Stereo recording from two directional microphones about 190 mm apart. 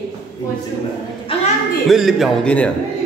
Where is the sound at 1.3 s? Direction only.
30° left (ahead or behind).